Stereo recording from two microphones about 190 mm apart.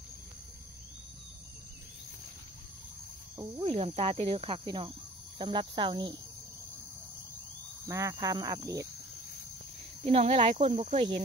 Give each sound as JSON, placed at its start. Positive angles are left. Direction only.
{"t": 3.6, "sound": "cricket", "side_deg": -30}
{"t": 7.9, "sound": "speech", "side_deg": -15}
{"t": 10.0, "sound": "speech", "side_deg": -30}